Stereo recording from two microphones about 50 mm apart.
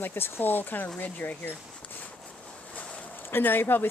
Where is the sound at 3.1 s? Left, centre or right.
Left.